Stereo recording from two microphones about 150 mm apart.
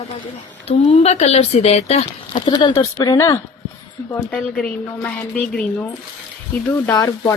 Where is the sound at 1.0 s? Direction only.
45° left (ahead or behind).